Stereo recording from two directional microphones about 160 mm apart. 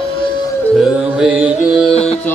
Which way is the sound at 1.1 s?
5° right (ahead or behind).